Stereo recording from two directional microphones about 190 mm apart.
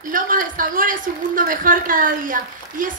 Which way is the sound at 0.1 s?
45° right (ahead or behind).